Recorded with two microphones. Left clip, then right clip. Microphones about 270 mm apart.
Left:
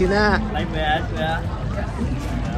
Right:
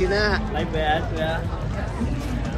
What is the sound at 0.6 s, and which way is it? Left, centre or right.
Speech, left.